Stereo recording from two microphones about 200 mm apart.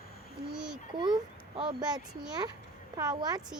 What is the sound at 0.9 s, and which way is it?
Speech, 20° right (ahead or behind).